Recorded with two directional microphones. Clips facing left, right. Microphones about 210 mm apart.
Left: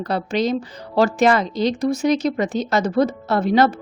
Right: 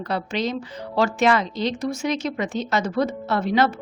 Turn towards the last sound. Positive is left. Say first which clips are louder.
# left 4 dB
turn(degrees=40)  # may be behind; listen again after turning